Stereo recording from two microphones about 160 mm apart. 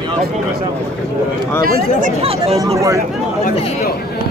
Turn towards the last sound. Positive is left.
turn(degrees=-20)  # may be behind; listen again after turning